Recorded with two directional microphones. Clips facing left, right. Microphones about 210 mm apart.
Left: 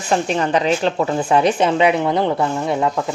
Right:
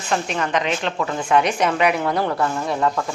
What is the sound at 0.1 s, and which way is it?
A woman's voice, 30° left (ahead or behind).